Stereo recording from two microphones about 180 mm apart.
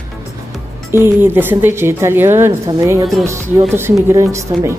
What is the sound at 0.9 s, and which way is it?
A woman's voice, 10° right (ahead or behind).